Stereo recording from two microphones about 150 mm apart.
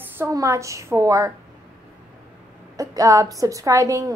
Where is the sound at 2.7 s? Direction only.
20° right (ahead or behind).